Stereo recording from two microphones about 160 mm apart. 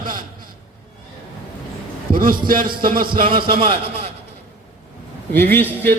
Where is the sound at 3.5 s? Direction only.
35° right (ahead or behind).